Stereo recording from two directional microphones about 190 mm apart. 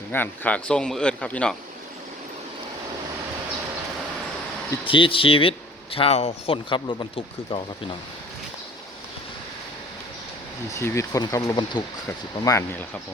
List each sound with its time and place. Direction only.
0.1 s speech: 10° left (ahead or behind)
4.9 s speech: 25° left (ahead or behind)
10.7 s speech: 15° left (ahead or behind)